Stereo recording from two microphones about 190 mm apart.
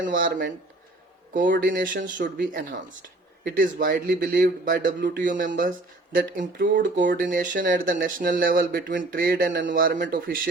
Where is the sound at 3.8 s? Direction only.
50° right (ahead or behind).